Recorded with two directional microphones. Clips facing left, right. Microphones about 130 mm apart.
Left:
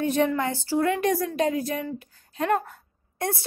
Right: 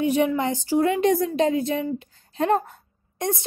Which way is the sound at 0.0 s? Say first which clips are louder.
Right 2 dB; 10° right (ahead or behind).